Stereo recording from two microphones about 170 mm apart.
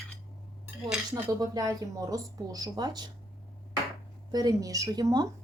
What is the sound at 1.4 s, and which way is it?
A woman's voice, 25° right (ahead or behind).